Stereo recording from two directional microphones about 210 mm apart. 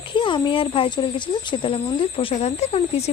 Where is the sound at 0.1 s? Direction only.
25° left (ahead or behind).